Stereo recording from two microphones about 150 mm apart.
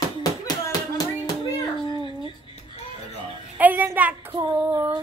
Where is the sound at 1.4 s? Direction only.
25° left (ahead or behind).